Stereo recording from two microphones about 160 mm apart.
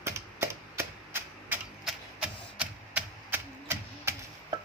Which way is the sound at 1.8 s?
5° right (ahead or behind).